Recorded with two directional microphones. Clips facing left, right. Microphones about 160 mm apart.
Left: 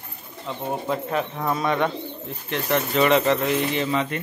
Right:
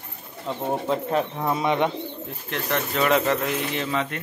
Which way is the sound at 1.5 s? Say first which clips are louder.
Even; 20° right (ahead or behind).